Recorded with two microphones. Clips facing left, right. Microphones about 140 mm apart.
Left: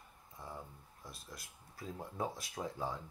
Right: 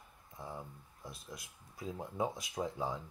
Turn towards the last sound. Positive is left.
turn(degrees=-20)  # may be behind; listen again after turning